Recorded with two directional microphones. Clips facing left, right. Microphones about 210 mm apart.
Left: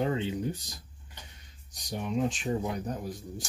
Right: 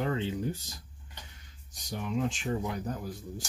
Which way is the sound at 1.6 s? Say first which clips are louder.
Left 2 dB; 20° left (ahead or behind).